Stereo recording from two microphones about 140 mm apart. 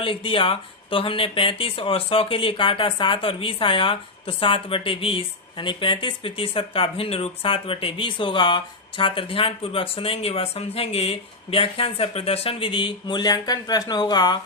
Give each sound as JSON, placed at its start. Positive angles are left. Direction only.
{"t": 0.0, "sound": "speech", "side_deg": 40}